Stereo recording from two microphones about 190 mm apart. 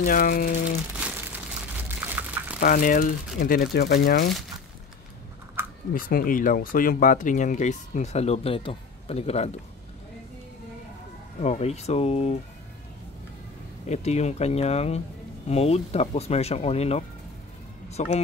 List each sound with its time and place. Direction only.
0.0 s speech: 45° left (ahead or behind)
0.9 s crumpling: 10° right (ahead or behind)
2.6 s speech: 45° left (ahead or behind)
5.9 s speech: 50° left (ahead or behind)
11.4 s speech: 35° left (ahead or behind)
13.8 s speech: 35° left (ahead or behind)